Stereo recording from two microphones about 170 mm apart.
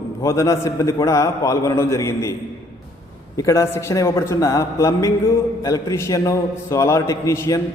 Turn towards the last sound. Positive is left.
turn(degrees=15)  # may be behind; listen again after turning